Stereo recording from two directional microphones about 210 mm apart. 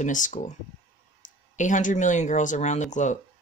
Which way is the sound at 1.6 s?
35° left (ahead or behind).